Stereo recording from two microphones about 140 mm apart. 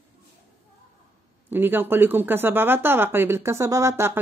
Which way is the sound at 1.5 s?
15° right (ahead or behind).